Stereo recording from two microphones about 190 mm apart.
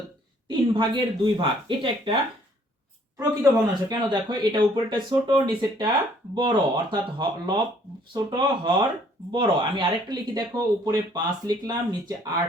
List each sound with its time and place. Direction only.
0.7 s speech: 25° right (ahead or behind)
3.2 s speech: 20° right (ahead or behind)